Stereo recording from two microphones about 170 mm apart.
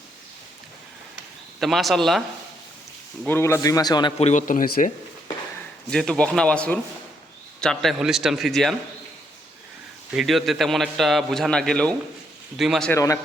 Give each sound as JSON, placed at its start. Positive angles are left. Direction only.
{"t": 1.1, "sound": "a sound", "side_deg": 0}
{"t": 3.2, "sound": "a man's voice", "side_deg": 15}
{"t": 4.2, "sound": "speech", "side_deg": 45}
{"t": 5.9, "sound": "a man's voice", "side_deg": 5}
{"t": 10.1, "sound": "a man's voice", "side_deg": 0}
{"t": 12.9, "sound": "a man's voice", "side_deg": 20}